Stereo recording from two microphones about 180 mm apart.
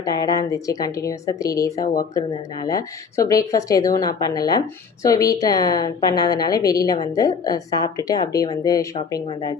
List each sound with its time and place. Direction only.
0.0 s a woman's voice: 20° left (ahead or behind)